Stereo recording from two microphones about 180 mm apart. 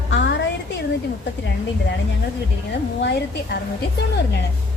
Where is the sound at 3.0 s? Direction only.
70° left (ahead or behind).